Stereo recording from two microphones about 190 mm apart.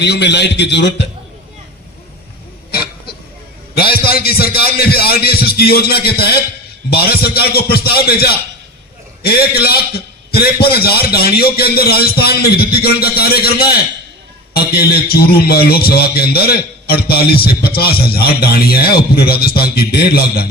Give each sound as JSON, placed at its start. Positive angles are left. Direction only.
{"t": 0.0, "sound": "a man's voice", "side_deg": 65}
{"t": 3.8, "sound": "a man's voice", "side_deg": 55}